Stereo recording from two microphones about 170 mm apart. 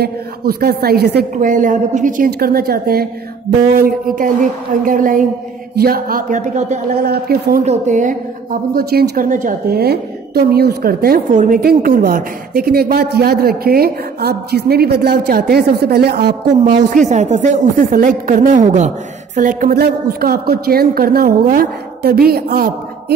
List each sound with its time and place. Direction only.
0.0 s a woman's voice: 65° right (ahead or behind)
1.5 s a woman's voice: 50° right (ahead or behind)
7.0 s a woman's voice: 65° right (ahead or behind)
7.6 s a woman's voice: 45° right (ahead or behind); by 16.3 s 70° right (ahead or behind)
16.9 s a woman's voice: 45° right (ahead or behind)
19.7 s a woman's voice: 65° right (ahead or behind)